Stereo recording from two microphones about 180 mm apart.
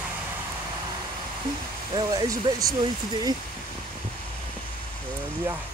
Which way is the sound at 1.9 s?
25° right (ahead or behind).